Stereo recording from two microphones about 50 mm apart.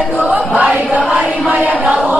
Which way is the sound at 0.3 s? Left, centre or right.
Centre.